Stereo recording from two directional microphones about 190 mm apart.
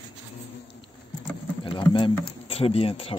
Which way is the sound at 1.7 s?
25° left (ahead or behind).